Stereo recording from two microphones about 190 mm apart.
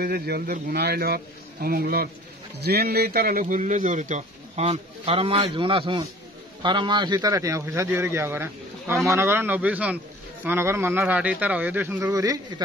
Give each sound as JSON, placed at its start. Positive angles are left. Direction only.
{"t": 0.0, "sound": "a man's voice", "side_deg": -55}